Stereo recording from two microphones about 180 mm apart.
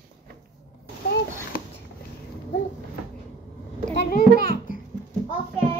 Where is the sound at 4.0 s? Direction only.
55° left (ahead or behind).